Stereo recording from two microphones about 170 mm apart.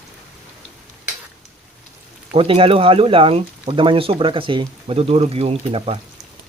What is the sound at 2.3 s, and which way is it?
Speech, 30° right (ahead or behind).